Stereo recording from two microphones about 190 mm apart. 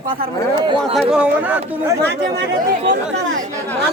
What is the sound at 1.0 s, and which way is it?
Speech, 5° right (ahead or behind).